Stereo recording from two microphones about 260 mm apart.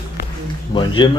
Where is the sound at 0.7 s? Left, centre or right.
Centre.